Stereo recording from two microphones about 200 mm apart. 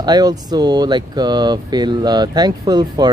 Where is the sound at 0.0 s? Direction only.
20° right (ahead or behind).